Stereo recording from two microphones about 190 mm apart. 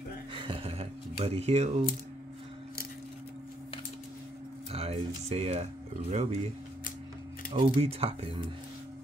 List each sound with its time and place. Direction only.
0.3 s a sound: 25° right (ahead or behind)
4.7 s speech: 30° right (ahead or behind)
7.5 s speech: 30° right (ahead or behind)